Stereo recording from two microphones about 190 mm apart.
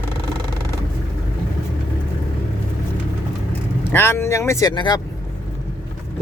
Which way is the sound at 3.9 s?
10° left (ahead or behind).